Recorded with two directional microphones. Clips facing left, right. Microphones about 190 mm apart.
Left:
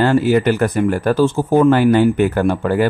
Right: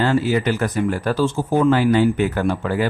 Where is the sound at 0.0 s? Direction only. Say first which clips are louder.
Left 5 dB; 55° left (ahead or behind).